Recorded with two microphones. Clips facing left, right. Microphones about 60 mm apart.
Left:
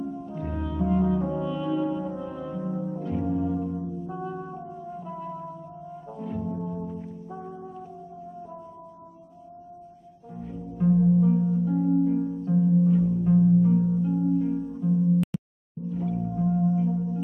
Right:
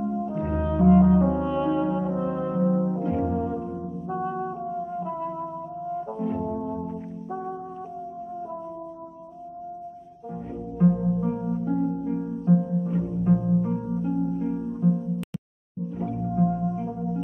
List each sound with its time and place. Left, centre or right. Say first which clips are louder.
0.0 s french horn: right 5 dB; right
4.6 s music: right 7 dB; right
5.9 s brass instrument: right 5 dB; right
10.3 s music: right 3 dB; right